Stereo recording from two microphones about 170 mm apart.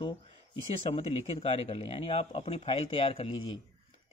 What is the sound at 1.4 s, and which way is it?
Speech, 40° left (ahead or behind).